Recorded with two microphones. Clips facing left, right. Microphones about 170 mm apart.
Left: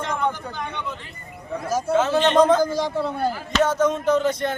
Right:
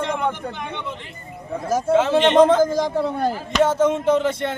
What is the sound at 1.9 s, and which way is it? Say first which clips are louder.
A man's voice: right 3 dB; 25° right (ahead or behind).